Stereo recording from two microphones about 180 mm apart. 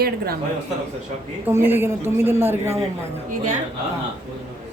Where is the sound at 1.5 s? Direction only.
10° right (ahead or behind).